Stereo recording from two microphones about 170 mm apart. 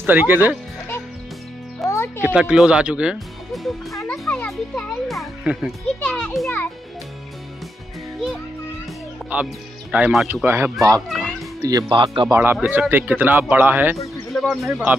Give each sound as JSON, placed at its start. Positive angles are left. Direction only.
{"t": 0.0, "sound": "speech", "side_deg": -10}
{"t": 1.9, "sound": "music", "side_deg": 15}
{"t": 2.2, "sound": "a child's voice", "side_deg": -5}
{"t": 5.9, "sound": "a child's voice", "side_deg": 5}
{"t": 9.3, "sound": "speech", "side_deg": -10}
{"t": 11.1, "sound": "music", "side_deg": 0}
{"t": 11.6, "sound": "speech", "side_deg": -25}
{"t": 14.3, "sound": "a child's voice", "side_deg": 0}